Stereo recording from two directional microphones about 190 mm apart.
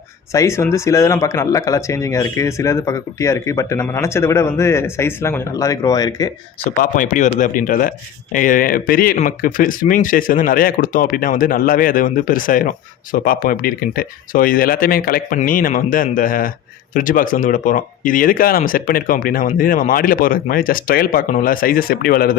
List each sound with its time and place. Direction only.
0.3 s speech: 15° left (ahead or behind)
6.7 s speech: 45° left (ahead or behind)